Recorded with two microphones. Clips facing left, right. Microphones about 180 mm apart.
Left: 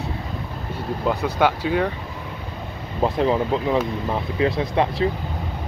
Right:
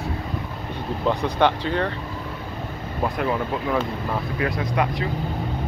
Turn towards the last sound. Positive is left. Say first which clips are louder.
# left 3 dB
turn(degrees=25)  # may be behind; listen again after turning